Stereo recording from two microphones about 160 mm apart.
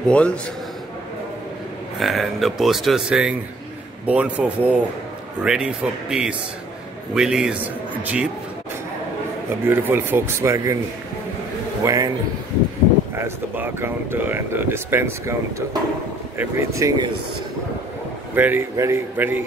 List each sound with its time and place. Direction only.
2.0 s speech: centre (ahead or behind)
9.7 s speech: 15° right (ahead or behind)
11.8 s speech: 20° right (ahead or behind)
13.1 s speech: 15° right (ahead or behind)
18.3 s speech: 10° right (ahead or behind)